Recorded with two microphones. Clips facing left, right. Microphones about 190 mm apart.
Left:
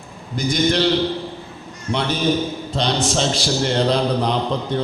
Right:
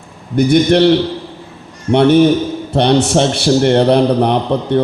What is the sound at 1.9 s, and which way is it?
A man's voice, 60° right (ahead or behind).